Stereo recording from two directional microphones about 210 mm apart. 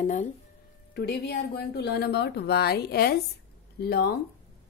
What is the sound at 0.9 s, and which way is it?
A woman's voice, 50° left (ahead or behind).